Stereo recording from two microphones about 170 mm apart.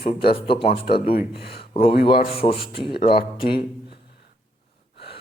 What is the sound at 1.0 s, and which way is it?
Speech, 65° left (ahead or behind).